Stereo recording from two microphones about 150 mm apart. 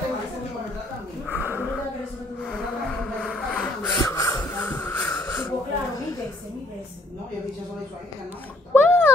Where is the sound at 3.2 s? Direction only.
10° left (ahead or behind).